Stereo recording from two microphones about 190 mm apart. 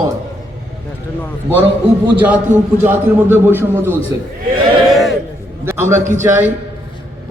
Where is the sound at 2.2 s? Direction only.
10° right (ahead or behind).